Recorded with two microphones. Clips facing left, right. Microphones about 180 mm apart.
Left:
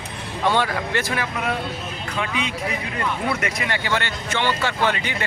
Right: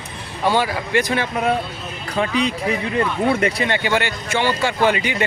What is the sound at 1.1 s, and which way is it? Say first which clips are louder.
Speech: right 5 dB; 30° right (ahead or behind).